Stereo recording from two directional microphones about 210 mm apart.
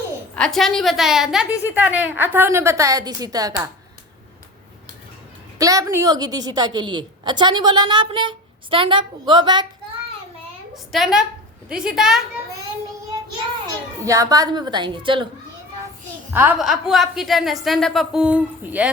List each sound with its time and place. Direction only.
0.3 s a woman's voice: centre (ahead or behind); by 3.7 s 15° right (ahead or behind)
5.5 s a woman's voice: 15° right (ahead or behind)
10.9 s a woman's voice: centre (ahead or behind)
14.0 s a woman's voice: 15° right (ahead or behind)
16.3 s a woman's voice: 5° right (ahead or behind)